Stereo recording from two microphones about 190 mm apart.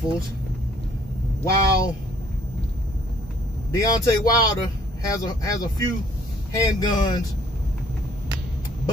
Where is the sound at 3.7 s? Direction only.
20° left (ahead or behind).